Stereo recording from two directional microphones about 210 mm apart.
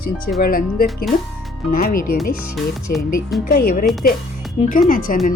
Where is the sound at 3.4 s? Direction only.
45° left (ahead or behind).